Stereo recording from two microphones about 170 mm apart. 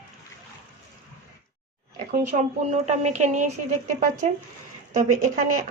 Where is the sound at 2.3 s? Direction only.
40° right (ahead or behind).